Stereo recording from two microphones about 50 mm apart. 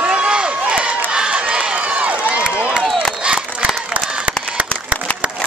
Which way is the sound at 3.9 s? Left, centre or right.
Right.